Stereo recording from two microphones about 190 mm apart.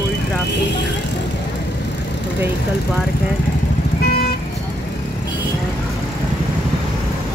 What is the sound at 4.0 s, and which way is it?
Vehicle, 55° left (ahead or behind).